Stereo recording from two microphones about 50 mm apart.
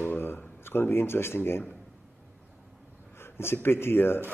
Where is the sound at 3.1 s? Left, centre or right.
Left.